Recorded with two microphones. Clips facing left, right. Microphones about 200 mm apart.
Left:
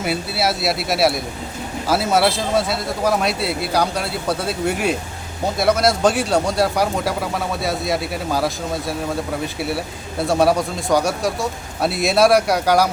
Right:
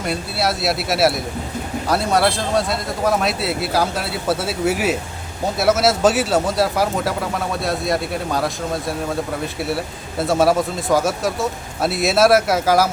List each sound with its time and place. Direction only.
0.0 s speech: 5° left (ahead or behind)